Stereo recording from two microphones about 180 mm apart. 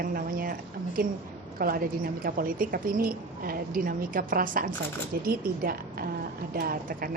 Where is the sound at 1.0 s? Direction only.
50° right (ahead or behind).